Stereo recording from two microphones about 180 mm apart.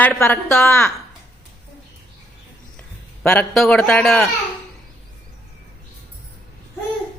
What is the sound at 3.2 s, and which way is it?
A man's voice, 10° left (ahead or behind).